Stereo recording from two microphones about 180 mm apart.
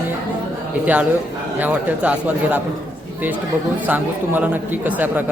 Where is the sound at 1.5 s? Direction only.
10° right (ahead or behind).